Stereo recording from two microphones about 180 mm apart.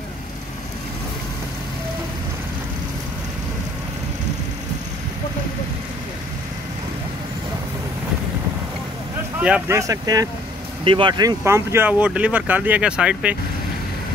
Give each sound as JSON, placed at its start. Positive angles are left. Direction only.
{"t": 9.4, "sound": "speech", "side_deg": -10}